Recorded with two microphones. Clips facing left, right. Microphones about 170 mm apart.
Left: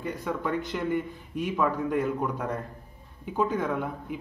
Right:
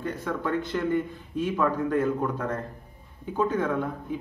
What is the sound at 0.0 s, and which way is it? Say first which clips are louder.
Speech: right 1 dB; 15° left (ahead or behind).